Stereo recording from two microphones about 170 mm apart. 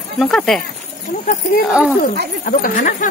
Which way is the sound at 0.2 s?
5° left (ahead or behind).